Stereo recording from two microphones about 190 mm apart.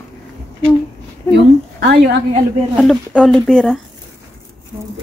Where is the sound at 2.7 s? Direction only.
Centre (ahead or behind).